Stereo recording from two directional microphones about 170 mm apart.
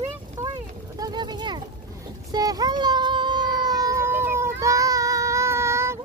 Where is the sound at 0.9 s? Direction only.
25° right (ahead or behind).